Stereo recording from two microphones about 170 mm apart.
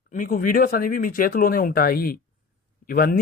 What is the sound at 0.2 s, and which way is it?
Speech, 55° left (ahead or behind).